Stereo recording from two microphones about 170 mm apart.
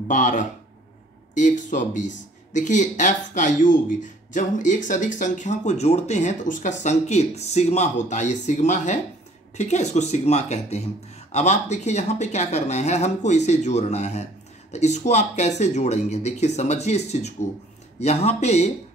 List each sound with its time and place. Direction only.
0.1 s speech: 50° left (ahead or behind)